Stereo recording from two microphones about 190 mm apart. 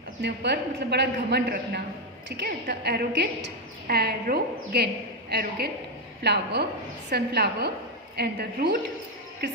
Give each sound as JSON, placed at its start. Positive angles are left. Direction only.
{"t": 0.2, "sound": "a woman's voice", "side_deg": -60}